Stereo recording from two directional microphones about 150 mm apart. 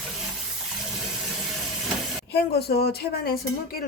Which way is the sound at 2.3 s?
90° left.